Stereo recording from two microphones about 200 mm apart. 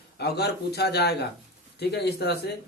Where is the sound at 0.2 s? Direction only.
55° left (ahead or behind).